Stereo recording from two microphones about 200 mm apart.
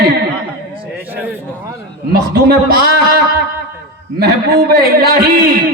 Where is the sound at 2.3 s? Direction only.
50° right (ahead or behind).